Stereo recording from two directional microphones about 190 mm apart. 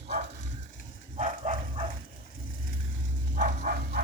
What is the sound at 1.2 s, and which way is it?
Bow-wow, 40° right (ahead or behind).